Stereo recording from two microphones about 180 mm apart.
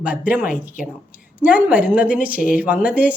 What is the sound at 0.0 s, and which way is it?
A woman's voice, 10° right (ahead or behind).